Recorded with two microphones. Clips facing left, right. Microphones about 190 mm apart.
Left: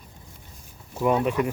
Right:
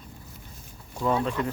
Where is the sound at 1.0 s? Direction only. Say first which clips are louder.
Left 4 dB; 15° left (ahead or behind).